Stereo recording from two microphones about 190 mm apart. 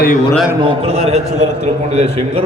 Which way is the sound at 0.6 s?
30° right (ahead or behind).